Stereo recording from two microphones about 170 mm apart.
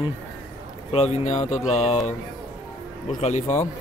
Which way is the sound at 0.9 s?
35° left (ahead or behind).